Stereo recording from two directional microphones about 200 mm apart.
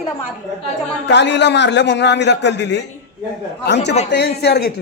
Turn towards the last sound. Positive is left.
turn(degrees=55)  # may be behind; listen again after turning